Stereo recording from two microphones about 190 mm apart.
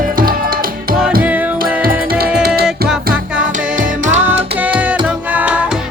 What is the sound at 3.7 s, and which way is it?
Music, 40° right (ahead or behind).